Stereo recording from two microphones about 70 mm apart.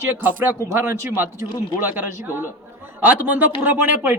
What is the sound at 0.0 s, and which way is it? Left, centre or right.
A man's voice, right.